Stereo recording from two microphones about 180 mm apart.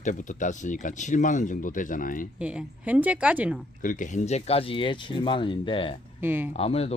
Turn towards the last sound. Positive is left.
turn(degrees=35)  # may be behind; listen again after turning